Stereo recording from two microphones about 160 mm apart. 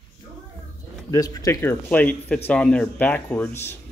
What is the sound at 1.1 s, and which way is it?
Speech, 20° left (ahead or behind).